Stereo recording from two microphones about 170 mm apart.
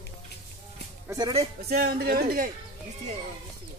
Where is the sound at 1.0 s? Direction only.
20° right (ahead or behind).